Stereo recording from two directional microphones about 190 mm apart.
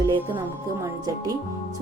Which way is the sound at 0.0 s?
15° right (ahead or behind).